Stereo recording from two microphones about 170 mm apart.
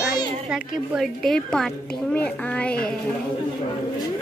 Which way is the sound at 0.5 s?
5° right (ahead or behind).